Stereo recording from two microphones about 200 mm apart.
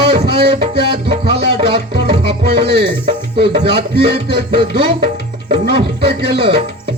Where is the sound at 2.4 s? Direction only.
55° right (ahead or behind).